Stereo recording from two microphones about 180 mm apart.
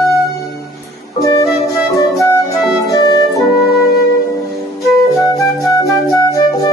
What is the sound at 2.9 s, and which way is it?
Organ, 20° left (ahead or behind).